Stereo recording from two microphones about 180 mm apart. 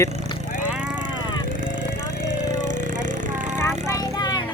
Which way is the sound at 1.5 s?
45° right (ahead or behind).